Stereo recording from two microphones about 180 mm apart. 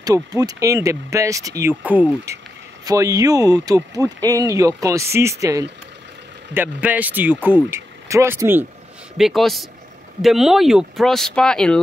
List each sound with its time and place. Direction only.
0.0 s speech: 20° right (ahead or behind)
2.8 s speech: 20° right (ahead or behind)
9.1 s speech: centre (ahead or behind)